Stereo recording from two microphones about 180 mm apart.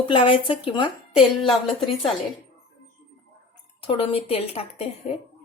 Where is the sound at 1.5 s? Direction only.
Centre (ahead or behind).